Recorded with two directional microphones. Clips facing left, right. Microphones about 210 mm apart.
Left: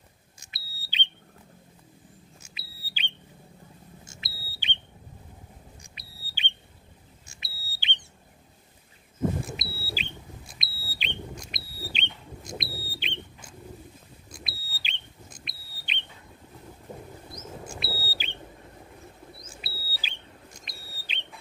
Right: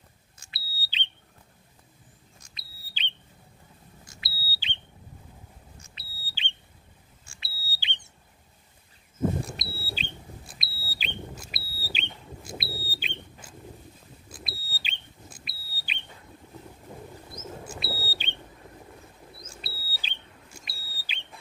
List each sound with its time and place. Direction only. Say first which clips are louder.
0.4 s smoke detector: right 1 dB; 20° left (ahead or behind)
2.4 s smoke detector: left 5 dB; 10° left (ahead or behind)
4.0 s smoke detector: left 1 dB; 25° left (ahead or behind)
5.8 s smoke detector: left 1 dB; 15° left (ahead or behind)
9.4 s alarm: even; centre (ahead or behind)
14.3 s smoke detector: right 2 dB; centre (ahead or behind)
17.7 s smoke detector: right 1 dB; centre (ahead or behind)
19.5 s a sound: even; 5° left (ahead or behind)
20.5 s a sound: left 1 dB; 10° right (ahead or behind)